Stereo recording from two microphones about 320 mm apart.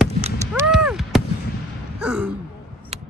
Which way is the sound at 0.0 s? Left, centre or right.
Centre.